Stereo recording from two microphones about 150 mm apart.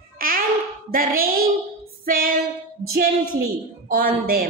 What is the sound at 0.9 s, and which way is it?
Speech, 70° right (ahead or behind).